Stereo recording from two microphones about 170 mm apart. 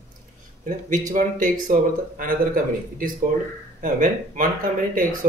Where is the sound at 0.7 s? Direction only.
50° right (ahead or behind).